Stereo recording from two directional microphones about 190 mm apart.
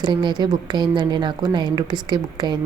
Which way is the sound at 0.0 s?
25° right (ahead or behind).